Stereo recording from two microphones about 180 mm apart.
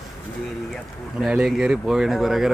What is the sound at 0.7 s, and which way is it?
Speech, centre (ahead or behind).